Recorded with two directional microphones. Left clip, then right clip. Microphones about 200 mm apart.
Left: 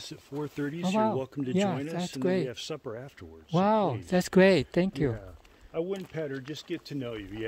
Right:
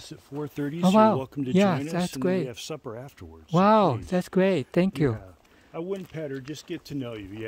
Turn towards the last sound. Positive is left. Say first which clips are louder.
# right 1 dB
turn(degrees=-50)  # may be behind; listen again after turning